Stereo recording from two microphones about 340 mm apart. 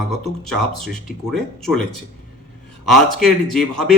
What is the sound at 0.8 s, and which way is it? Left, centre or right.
Speech, centre.